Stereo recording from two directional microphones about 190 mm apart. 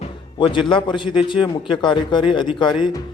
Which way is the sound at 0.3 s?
25° left (ahead or behind).